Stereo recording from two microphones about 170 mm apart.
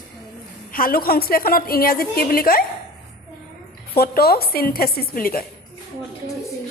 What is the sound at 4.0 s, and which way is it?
A woman's voice, 65° left (ahead or behind).